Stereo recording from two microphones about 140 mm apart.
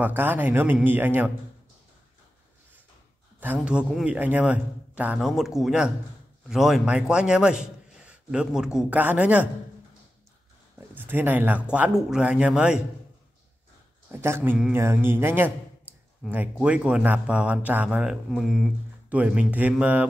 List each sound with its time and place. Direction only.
0.0 s speech: 15° right (ahead or behind)
3.6 s a man's voice: 5° right (ahead or behind)
10.8 s speech: 15° right (ahead or behind)
14.1 s speech: 15° right (ahead or behind)
16.2 s speech: centre (ahead or behind)